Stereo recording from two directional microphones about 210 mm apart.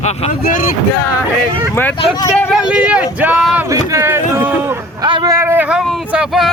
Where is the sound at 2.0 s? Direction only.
20° left (ahead or behind).